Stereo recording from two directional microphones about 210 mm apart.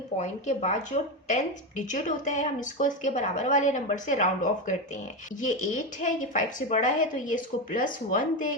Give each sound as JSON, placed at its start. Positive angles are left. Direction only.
{"t": 0.2, "sound": "a woman's voice", "side_deg": 35}